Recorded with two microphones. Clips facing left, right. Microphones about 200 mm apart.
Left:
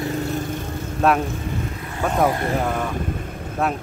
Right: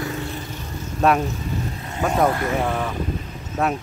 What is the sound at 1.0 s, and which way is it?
Speech, centre (ahead or behind).